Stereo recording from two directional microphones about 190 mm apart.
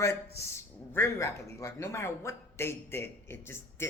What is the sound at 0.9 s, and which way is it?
Speech, 15° left (ahead or behind).